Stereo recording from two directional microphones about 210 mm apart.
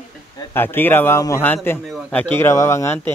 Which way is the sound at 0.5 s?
10° left (ahead or behind).